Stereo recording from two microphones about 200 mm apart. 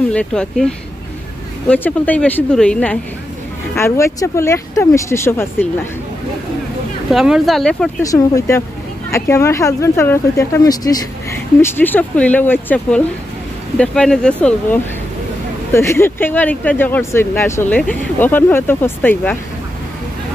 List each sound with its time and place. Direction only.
0.1 s speech: 5° left (ahead or behind)
7.1 s speech: centre (ahead or behind)
8.0 s speech: 15° left (ahead or behind)